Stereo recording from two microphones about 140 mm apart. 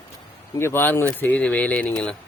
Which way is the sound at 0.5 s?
15° left (ahead or behind).